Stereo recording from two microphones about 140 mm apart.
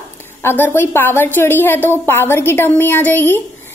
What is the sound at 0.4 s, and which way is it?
A woman's voice, 15° left (ahead or behind).